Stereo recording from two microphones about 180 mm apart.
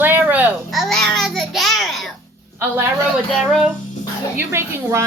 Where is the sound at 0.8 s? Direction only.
Centre (ahead or behind).